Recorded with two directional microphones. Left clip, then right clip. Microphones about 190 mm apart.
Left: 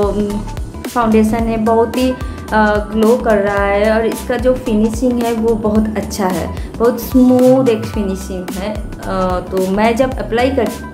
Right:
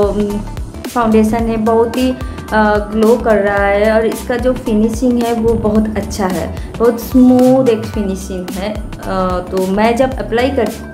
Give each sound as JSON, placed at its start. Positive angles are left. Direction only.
{"t": 0.9, "sound": "speech", "side_deg": 0}